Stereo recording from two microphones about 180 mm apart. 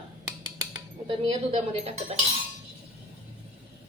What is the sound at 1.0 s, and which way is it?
Speech, 30° right (ahead or behind).